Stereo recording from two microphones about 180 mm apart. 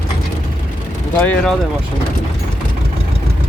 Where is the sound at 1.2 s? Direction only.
10° left (ahead or behind).